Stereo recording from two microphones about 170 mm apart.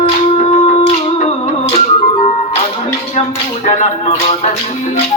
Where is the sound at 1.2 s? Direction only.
40° left (ahead or behind).